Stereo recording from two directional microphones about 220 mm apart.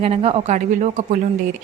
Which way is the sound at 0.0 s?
25° right (ahead or behind).